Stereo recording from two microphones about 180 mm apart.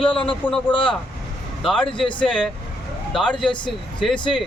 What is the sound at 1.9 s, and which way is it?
Speech, 30° left (ahead or behind).